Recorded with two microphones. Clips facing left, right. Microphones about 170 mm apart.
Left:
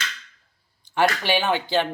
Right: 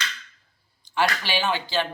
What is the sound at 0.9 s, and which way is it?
Speech, 55° left (ahead or behind).